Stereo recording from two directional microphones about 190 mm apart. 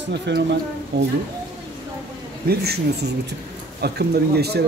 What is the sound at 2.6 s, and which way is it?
Speech, 55° right (ahead or behind).